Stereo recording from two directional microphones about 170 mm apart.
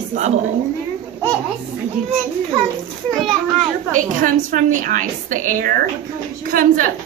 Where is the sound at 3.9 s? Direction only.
50° right (ahead or behind).